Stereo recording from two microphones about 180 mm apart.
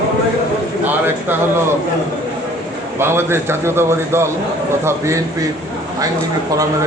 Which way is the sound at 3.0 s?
15° right (ahead or behind).